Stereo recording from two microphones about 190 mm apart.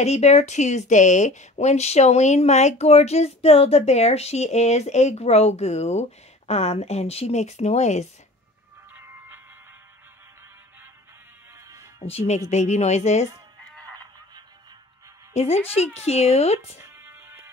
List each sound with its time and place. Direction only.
0.0 s speech: 35° left (ahead or behind)
12.0 s speech: 35° left (ahead or behind)
15.3 s speech: 30° left (ahead or behind)
16.8 s music: 10° right (ahead or behind)